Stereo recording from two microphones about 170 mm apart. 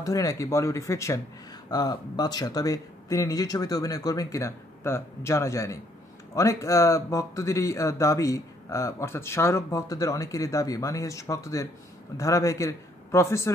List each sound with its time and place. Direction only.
0.0 s a man's voice: 20° left (ahead or behind)